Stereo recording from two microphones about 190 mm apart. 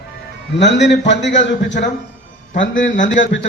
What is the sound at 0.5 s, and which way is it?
Speech, 70° left (ahead or behind).